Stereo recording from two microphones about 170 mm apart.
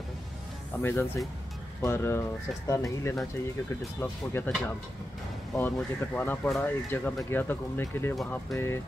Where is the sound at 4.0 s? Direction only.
10° left (ahead or behind).